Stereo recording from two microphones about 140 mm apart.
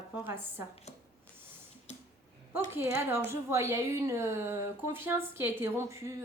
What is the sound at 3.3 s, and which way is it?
A woman's voice, 20° right (ahead or behind).